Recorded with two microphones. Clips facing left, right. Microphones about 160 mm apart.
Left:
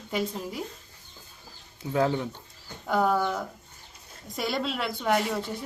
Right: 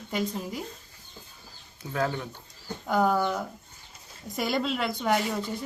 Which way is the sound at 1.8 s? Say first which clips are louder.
Left 6 dB; 25° left (ahead or behind).